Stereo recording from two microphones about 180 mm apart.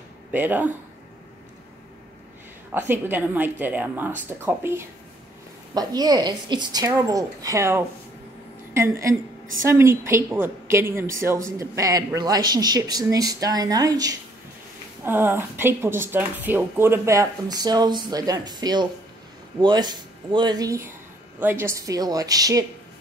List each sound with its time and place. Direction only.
0.3 s a woman's voice: 10° right (ahead or behind)
2.7 s a woman's voice: 10° right (ahead or behind)